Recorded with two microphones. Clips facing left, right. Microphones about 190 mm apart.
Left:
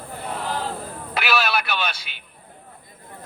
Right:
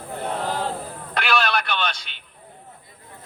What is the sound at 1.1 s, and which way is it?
Radio, 5° left (ahead or behind).